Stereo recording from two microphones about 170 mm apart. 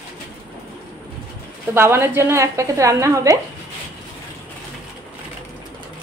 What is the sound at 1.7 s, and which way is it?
A woman's voice, 15° right (ahead or behind).